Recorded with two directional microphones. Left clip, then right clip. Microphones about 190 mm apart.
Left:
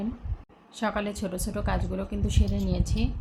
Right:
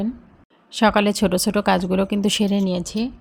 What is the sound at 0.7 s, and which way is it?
A woman's voice, 50° right (ahead or behind).